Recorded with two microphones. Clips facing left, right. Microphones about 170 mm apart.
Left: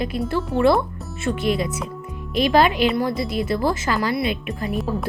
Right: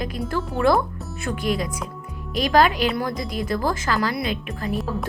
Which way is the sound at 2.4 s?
40° right (ahead or behind).